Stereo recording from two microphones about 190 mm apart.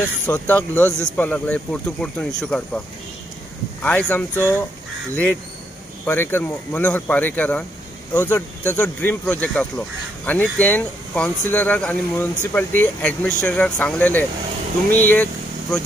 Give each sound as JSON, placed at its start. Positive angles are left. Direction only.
{"t": 0.3, "sound": "speech", "side_deg": 10}
{"t": 3.8, "sound": "speech", "side_deg": 10}
{"t": 6.0, "sound": "speech", "side_deg": 10}